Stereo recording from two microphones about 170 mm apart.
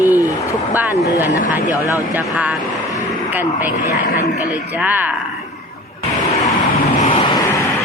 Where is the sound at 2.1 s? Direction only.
10° right (ahead or behind).